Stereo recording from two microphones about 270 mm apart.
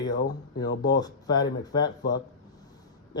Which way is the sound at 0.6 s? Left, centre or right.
Left.